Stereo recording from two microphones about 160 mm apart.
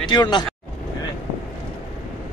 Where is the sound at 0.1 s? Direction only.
25° left (ahead or behind).